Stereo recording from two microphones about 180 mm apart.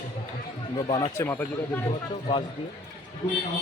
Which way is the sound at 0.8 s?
30° left (ahead or behind).